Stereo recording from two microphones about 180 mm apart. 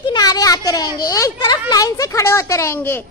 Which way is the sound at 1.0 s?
20° left (ahead or behind).